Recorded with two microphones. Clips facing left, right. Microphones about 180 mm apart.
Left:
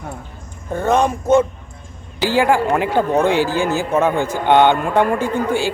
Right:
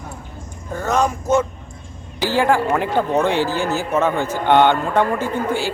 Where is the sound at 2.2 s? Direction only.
10° left (ahead or behind).